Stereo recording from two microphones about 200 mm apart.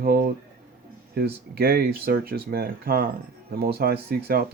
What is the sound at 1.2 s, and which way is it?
Speech, 50° right (ahead or behind).